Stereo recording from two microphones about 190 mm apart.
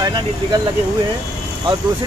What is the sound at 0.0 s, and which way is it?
Speech, 20° right (ahead or behind).